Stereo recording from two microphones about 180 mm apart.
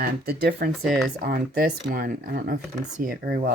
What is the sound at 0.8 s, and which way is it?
Speech, centre (ahead or behind).